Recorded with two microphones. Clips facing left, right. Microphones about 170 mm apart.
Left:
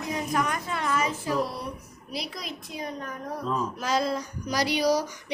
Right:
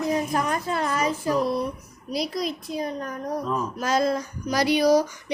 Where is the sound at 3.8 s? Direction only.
45° right (ahead or behind).